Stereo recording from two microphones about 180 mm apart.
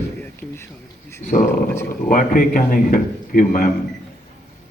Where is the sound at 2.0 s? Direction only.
50° left (ahead or behind).